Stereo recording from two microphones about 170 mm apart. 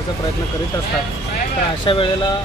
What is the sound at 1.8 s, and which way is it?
Speech, 30° left (ahead or behind).